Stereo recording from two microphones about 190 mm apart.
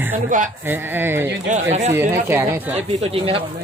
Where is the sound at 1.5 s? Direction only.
35° right (ahead or behind).